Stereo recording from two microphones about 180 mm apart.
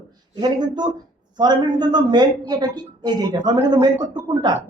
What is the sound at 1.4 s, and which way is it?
A woman's voice, 25° right (ahead or behind).